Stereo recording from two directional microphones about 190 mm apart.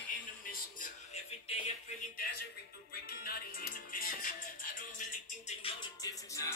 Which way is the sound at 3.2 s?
50° left (ahead or behind).